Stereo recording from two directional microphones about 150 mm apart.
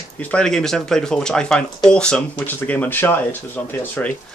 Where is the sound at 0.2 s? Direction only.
5° left (ahead or behind).